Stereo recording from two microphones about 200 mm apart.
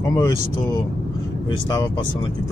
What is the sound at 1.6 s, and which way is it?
Speech, 20° left (ahead or behind).